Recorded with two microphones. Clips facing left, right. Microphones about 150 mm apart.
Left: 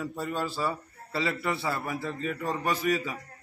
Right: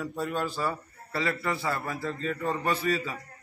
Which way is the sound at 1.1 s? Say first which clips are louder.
Even; 20° left (ahead or behind).